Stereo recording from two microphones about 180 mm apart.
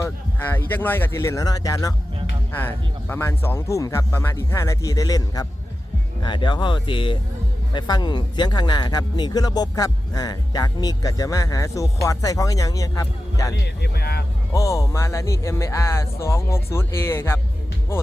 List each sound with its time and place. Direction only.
0.0 s a sound: 10° left (ahead or behind)
0.7 s speech: 10° left (ahead or behind)
13.8 s speech: 60° left (ahead or behind)
14.5 s speech: 20° left (ahead or behind)